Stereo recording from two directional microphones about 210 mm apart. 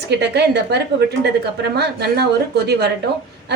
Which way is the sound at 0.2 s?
55° right (ahead or behind).